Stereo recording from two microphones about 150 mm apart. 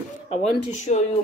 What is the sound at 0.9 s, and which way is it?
Speech, 65° left (ahead or behind).